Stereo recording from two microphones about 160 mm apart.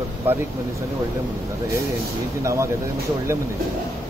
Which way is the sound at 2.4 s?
20° right (ahead or behind).